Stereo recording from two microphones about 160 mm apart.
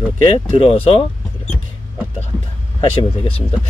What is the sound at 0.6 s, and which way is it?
Speech, 40° left (ahead or behind).